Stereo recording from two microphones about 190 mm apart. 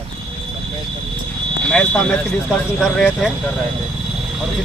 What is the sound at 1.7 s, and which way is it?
Speech, 5° left (ahead or behind).